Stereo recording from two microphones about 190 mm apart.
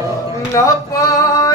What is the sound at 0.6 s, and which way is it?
Male singing, 15° left (ahead or behind).